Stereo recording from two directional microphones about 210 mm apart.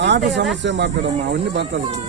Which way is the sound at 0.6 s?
55° right (ahead or behind).